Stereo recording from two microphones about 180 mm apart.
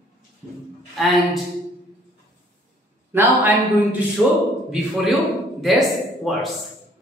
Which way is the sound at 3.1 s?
10° right (ahead or behind).